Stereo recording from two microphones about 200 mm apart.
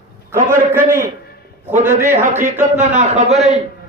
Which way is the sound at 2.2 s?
40° right (ahead or behind).